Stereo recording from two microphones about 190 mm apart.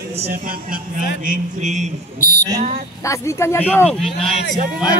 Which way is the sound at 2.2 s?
40° left (ahead or behind).